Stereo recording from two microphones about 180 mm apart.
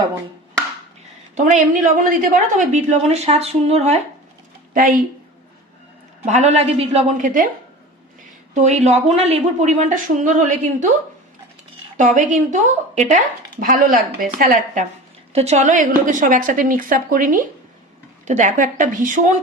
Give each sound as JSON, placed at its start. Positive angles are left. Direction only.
{"t": 1.4, "sound": "a woman's voice", "side_deg": -45}
{"t": 4.7, "sound": "a woman's voice", "side_deg": -50}
{"t": 6.2, "sound": "a woman's voice", "side_deg": -40}
{"t": 8.5, "sound": "a woman's voice", "side_deg": -40}
{"t": 11.9, "sound": "speech", "side_deg": -45}
{"t": 15.3, "sound": "a woman's voice", "side_deg": -35}